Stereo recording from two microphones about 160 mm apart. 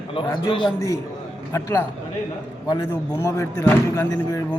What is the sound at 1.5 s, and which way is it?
Speech, 15° left (ahead or behind).